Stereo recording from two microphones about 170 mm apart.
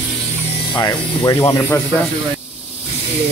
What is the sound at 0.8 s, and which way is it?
Speech, 20° left (ahead or behind).